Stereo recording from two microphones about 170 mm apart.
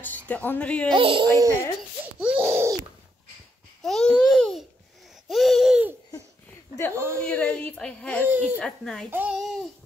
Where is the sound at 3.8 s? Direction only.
Centre (ahead or behind).